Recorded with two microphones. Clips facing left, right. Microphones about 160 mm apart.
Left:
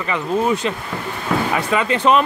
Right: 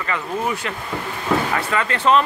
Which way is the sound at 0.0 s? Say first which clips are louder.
Left 4 dB; 20° left (ahead or behind).